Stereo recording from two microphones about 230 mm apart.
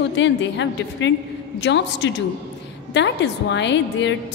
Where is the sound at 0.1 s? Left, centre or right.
Left.